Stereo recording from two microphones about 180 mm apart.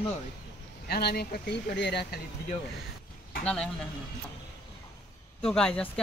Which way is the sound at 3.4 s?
5° left (ahead or behind).